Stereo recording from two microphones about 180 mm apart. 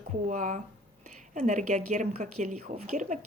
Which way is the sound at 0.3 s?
45° right (ahead or behind).